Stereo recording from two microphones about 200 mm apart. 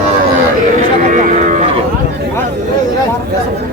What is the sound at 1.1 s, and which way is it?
Cattle, 40° right (ahead or behind).